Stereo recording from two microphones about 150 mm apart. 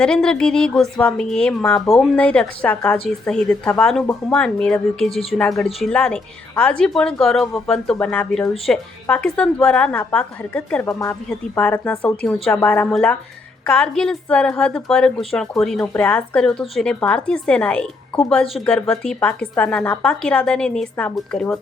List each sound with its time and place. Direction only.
0.0 s a woman's voice: 5° left (ahead or behind)
10.8 s speech: 20° left (ahead or behind)
11.5 s a woman's voice: 10° left (ahead or behind)